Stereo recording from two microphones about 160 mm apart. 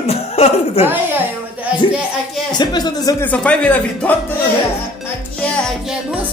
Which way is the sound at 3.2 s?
10° left (ahead or behind).